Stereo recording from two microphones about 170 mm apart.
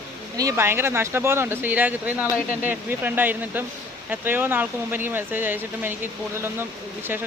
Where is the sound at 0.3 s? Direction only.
15° right (ahead or behind).